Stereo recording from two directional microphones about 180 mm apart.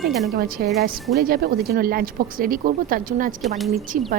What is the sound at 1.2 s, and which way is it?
A woman's voice, 55° right (ahead or behind).